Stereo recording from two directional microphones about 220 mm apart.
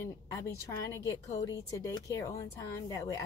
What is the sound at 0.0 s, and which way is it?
A woman's voice, 15° left (ahead or behind).